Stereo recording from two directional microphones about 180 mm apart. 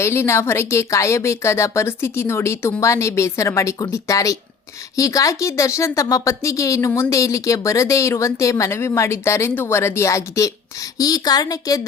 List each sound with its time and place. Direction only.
0.0 s a woman's voice: 15° left (ahead or behind)